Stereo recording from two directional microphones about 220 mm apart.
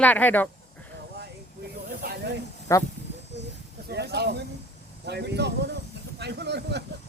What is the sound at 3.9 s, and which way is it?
Speech, 45° right (ahead or behind).